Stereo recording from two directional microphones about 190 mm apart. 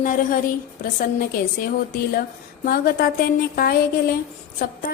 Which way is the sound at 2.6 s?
50° left (ahead or behind).